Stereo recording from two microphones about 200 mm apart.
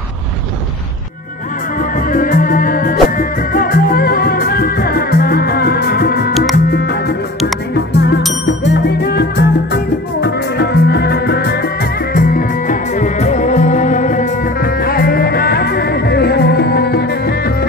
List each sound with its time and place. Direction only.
1.8 s music: 45° left (ahead or behind)
12.1 s music: 45° left (ahead or behind)